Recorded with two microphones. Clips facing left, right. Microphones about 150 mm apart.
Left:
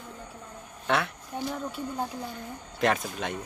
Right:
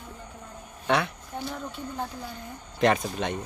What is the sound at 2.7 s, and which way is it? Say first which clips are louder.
Speech: right 3 dB; centre (ahead or behind).